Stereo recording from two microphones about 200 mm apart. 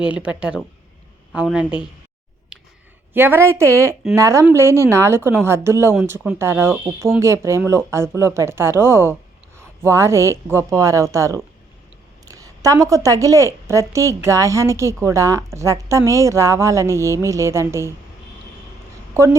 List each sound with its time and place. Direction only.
0.0 s a woman's voice: 5° right (ahead or behind)
3.1 s a woman's voice: 10° right (ahead or behind)
19.1 s a woman's voice: 15° right (ahead or behind)